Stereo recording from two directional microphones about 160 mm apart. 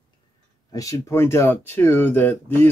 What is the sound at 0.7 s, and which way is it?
Speech, 20° left (ahead or behind).